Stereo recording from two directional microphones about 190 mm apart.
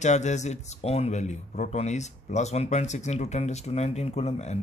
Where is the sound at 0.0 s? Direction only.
40° left (ahead or behind).